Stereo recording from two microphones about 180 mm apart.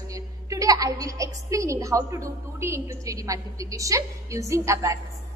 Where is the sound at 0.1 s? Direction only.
20° right (ahead or behind).